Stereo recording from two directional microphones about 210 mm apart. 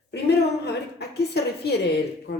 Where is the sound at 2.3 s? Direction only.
55° left (ahead or behind).